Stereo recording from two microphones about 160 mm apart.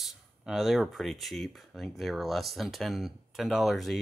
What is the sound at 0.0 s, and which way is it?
Speech, centre (ahead or behind).